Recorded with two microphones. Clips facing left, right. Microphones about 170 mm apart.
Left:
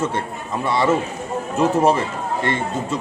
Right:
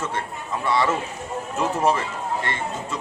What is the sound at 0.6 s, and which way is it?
Speech, 25° left (ahead or behind).